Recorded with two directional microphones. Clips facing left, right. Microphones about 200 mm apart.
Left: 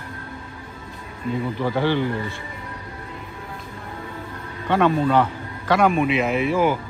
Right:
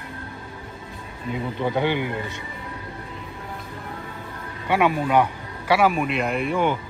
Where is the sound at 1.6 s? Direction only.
20° right (ahead or behind).